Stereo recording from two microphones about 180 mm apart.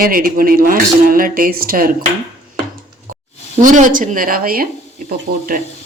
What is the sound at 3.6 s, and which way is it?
Speech, 45° right (ahead or behind).